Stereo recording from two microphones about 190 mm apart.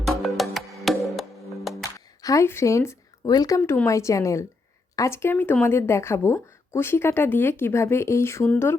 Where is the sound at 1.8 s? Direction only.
15° left (ahead or behind).